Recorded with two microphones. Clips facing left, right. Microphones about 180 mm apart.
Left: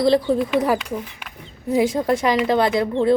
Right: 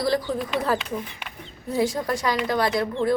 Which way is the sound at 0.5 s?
10° left (ahead or behind).